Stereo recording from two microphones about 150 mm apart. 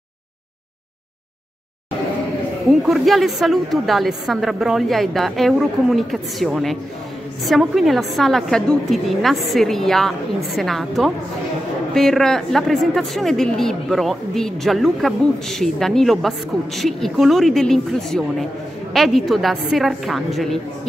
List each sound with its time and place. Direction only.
2.7 s a woman's voice: centre (ahead or behind)